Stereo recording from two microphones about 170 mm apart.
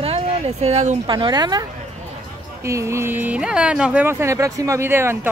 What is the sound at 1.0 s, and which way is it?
Speech, 25° right (ahead or behind).